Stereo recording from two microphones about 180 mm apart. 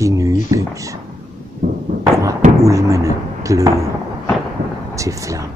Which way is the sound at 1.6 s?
60° right (ahead or behind).